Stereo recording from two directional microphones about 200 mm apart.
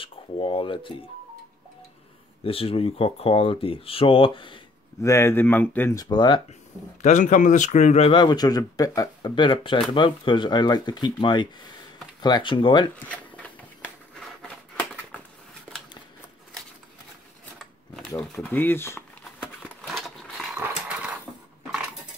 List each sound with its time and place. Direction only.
0.0 s speech: 25° left (ahead or behind)
2.4 s speech: 30° left (ahead or behind)
5.0 s speech: 10° left (ahead or behind)
7.0 s speech: 35° left (ahead or behind)
17.6 s a sound: centre (ahead or behind)
18.3 s speech: 10° left (ahead or behind)
19.9 s a sound: centre (ahead or behind)
20.5 s dog: 5° right (ahead or behind)